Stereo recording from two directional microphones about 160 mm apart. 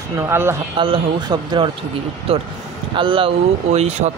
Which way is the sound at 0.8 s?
30° right (ahead or behind).